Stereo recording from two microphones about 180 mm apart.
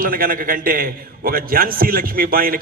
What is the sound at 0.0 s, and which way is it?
A man's voice, 50° right (ahead or behind).